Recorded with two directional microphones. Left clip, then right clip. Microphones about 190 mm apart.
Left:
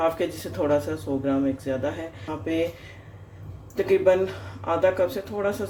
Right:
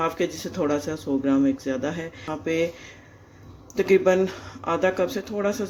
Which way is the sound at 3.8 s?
30° right (ahead or behind).